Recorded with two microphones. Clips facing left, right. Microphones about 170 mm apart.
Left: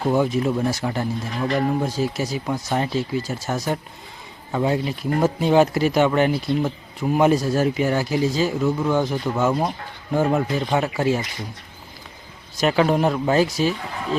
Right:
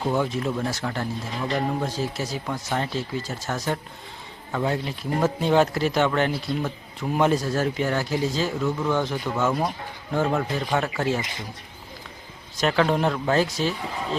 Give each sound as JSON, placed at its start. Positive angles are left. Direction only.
{"t": 0.0, "sound": "speech", "side_deg": 10}
{"t": 12.5, "sound": "speech", "side_deg": 10}